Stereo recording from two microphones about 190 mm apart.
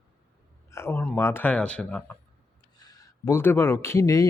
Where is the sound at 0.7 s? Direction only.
15° left (ahead or behind).